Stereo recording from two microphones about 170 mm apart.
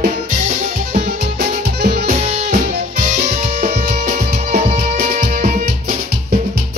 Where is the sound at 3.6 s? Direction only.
50° right (ahead or behind).